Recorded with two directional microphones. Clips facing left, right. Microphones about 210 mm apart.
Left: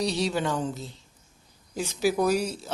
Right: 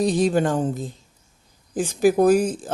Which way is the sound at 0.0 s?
50° right (ahead or behind).